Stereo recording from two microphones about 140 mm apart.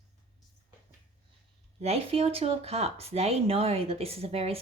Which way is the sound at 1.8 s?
45° right (ahead or behind).